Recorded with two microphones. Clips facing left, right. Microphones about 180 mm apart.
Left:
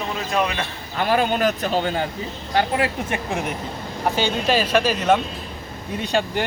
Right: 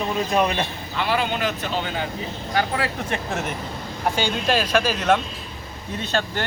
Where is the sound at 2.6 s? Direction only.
20° left (ahead or behind).